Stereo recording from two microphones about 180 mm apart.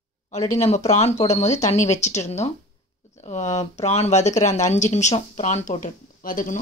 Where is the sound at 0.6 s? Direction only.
40° left (ahead or behind).